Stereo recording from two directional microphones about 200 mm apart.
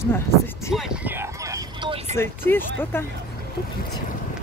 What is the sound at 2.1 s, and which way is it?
Speech, 10° left (ahead or behind).